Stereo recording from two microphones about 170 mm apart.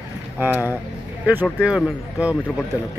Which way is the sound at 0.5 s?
15° left (ahead or behind).